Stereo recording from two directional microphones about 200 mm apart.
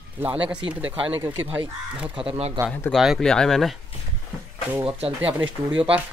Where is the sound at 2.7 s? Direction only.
5° left (ahead or behind).